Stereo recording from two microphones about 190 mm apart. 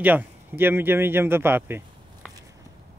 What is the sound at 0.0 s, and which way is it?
A man's voice, 10° right (ahead or behind).